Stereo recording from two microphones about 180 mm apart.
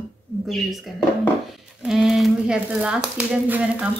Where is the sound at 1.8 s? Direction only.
Centre (ahead or behind).